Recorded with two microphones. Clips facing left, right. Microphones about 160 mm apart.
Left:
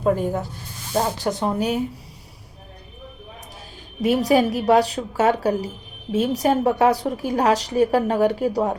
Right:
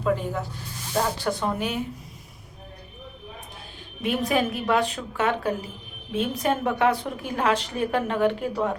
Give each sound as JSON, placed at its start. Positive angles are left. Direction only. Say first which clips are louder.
{"t": 0.0, "sound": "speech", "louder": "left 5 dB", "side_deg": 45}
{"t": 1.2, "sound": "a woman's voice", "louder": "left 3 dB", "side_deg": 20}
{"t": 1.5, "sound": "a woman's voice", "louder": "left 6 dB", "side_deg": 40}
{"t": 4.0, "sound": "a woman's voice", "louder": "left 6 dB", "side_deg": 40}